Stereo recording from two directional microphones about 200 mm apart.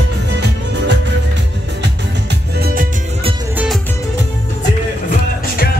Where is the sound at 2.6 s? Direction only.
45° right (ahead or behind).